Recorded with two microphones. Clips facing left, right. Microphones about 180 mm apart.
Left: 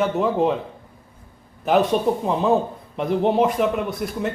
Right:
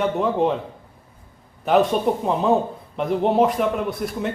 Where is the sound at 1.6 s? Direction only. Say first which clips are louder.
Even; centre (ahead or behind).